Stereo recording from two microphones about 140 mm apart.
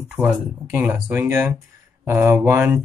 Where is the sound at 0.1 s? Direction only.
10° right (ahead or behind).